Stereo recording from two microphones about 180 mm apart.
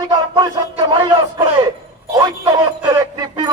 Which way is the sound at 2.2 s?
25° right (ahead or behind).